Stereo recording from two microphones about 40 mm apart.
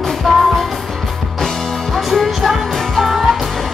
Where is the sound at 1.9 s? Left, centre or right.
Centre.